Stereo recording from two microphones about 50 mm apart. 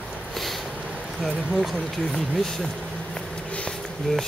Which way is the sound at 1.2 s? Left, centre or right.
Centre.